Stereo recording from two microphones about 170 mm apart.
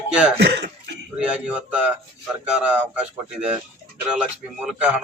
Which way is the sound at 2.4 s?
5° right (ahead or behind).